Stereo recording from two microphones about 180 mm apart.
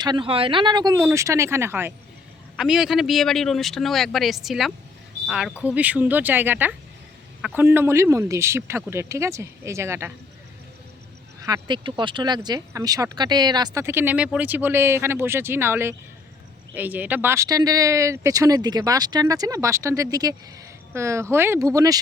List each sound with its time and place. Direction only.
0.0 s speech: 25° right (ahead or behind)
11.3 s speech: 20° right (ahead or behind)